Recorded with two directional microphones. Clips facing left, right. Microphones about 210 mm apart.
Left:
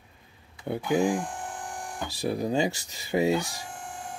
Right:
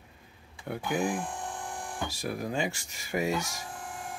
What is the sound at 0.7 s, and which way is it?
Speech, 25° left (ahead or behind).